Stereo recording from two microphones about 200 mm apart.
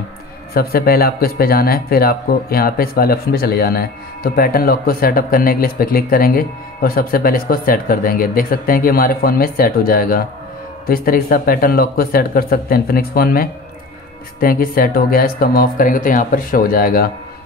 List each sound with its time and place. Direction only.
0.6 s speech: 50° left (ahead or behind)